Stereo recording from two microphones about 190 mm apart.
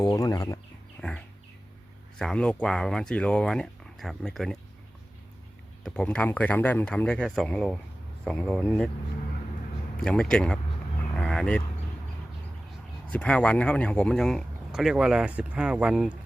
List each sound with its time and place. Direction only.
0.0 s speech: 20° left (ahead or behind)
2.1 s speech: 5° left (ahead or behind)
5.8 s speech: 5° left (ahead or behind)
10.0 s speech: 5° left (ahead or behind)
13.1 s speech: 5° left (ahead or behind)